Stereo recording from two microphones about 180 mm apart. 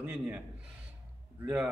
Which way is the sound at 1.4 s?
5° right (ahead or behind).